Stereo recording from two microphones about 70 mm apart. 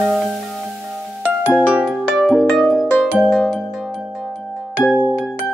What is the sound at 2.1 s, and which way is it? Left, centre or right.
Music, centre.